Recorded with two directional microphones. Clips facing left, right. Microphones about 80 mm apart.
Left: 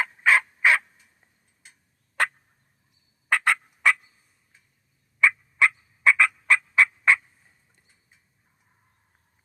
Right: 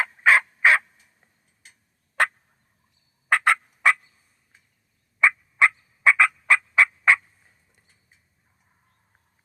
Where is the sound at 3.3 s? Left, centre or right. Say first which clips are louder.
Right 3 dB; centre.